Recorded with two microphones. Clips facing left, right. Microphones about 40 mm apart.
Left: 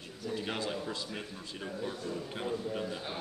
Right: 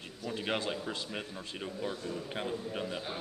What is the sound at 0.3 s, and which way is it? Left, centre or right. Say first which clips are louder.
Speech: right 1 dB; right.